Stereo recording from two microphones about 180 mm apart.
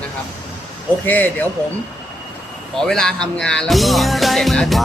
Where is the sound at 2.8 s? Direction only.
5° left (ahead or behind).